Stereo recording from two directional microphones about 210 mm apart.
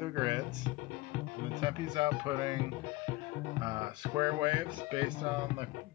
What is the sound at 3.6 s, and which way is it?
Speech, 20° right (ahead or behind).